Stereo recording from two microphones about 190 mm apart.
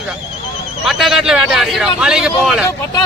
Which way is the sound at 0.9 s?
Centre (ahead or behind).